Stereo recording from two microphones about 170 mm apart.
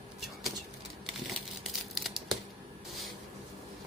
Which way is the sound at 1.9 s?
Centre (ahead or behind).